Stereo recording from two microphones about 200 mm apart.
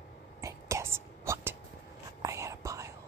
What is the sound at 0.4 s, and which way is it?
Whispering, 15° right (ahead or behind).